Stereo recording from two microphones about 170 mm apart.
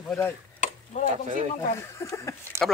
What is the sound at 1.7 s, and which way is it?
Speech, 15° left (ahead or behind).